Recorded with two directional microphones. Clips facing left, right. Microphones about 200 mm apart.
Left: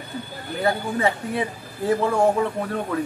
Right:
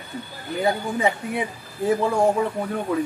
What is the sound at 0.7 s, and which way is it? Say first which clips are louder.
Speech: even; 15° right (ahead or behind).